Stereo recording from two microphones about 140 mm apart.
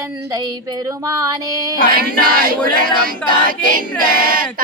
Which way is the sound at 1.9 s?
90° right.